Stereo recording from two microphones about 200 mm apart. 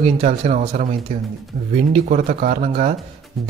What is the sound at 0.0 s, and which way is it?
Speech, 35° right (ahead or behind).